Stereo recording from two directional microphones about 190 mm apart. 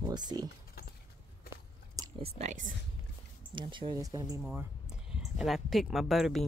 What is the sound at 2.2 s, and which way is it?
Speech, 35° right (ahead or behind).